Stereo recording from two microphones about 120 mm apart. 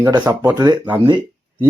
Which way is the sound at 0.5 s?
35° right (ahead or behind).